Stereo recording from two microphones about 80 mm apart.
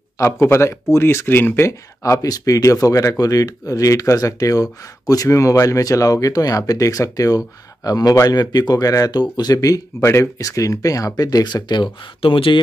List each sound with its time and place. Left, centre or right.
0.2 s speech: left
2.2 s speech: left
9.9 s speech: left